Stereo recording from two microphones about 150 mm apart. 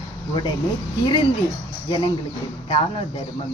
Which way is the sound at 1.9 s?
30° left (ahead or behind).